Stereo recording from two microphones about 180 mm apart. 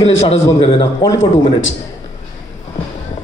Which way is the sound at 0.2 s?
35° left (ahead or behind).